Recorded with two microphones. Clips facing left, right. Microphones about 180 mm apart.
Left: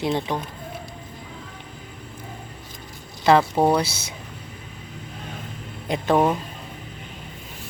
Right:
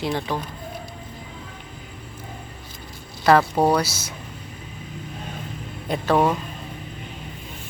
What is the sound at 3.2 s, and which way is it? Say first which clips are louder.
Speech: even; 20° left (ahead or behind).